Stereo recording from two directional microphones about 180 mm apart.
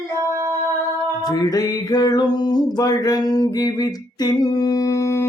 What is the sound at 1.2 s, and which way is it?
Music, 20° left (ahead or behind).